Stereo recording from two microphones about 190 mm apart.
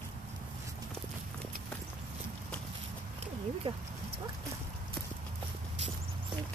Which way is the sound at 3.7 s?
30° right (ahead or behind).